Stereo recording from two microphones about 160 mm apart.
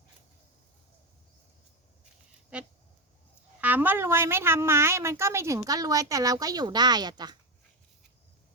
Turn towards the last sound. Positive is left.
turn(degrees=-25)  # may be behind; listen again after turning